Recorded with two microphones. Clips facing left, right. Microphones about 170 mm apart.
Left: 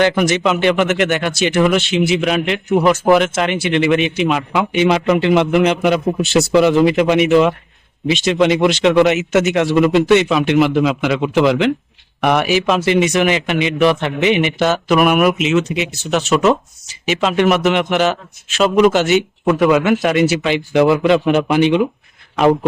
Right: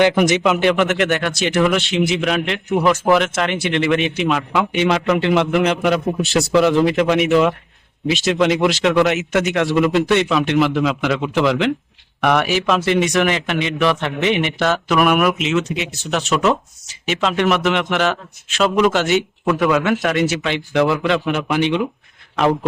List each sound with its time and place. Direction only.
0.2 s a man's voice: 15° right (ahead or behind)
0.4 s a man's voice: centre (ahead or behind)